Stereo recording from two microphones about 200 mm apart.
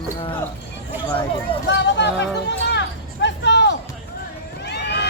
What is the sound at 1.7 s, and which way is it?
Hubbub, 60° left (ahead or behind).